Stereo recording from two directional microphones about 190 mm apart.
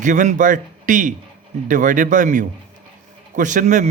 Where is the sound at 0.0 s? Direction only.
40° right (ahead or behind).